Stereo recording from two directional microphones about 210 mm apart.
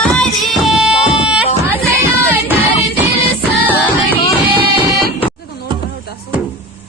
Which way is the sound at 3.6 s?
10° right (ahead or behind).